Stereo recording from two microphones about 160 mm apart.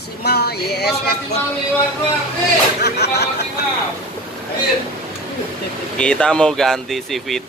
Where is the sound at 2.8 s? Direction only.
90° left.